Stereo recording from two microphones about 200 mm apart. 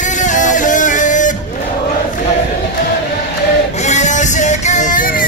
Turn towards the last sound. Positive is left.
turn(degrees=45)  # may be behind; listen again after turning